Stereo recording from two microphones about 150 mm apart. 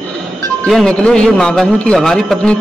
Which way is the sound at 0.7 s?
Centre (ahead or behind).